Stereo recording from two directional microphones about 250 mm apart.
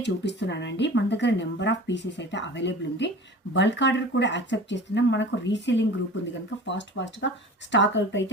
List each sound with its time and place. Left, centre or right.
0.0 s speech: left